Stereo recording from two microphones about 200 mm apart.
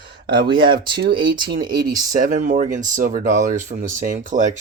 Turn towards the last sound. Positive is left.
turn(degrees=-40)  # may be behind; listen again after turning